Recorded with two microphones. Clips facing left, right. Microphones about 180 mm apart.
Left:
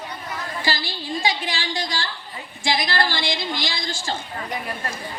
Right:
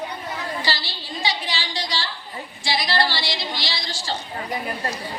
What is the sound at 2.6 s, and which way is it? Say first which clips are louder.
A woman's voice: even; 50° left (ahead or behind).